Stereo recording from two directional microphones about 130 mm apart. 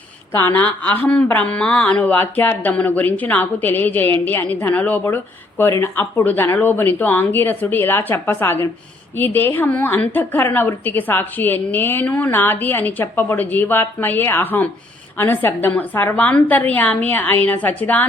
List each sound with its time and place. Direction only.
0.4 s speech: 10° left (ahead or behind)